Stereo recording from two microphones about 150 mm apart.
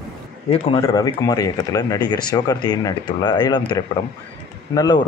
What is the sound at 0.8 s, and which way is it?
Speech, 25° left (ahead or behind).